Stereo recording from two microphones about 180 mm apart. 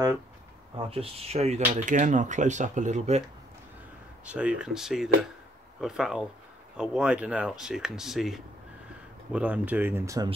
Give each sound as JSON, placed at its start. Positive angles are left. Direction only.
{"t": 0.7, "sound": "speech", "side_deg": -30}
{"t": 4.3, "sound": "speech", "side_deg": -5}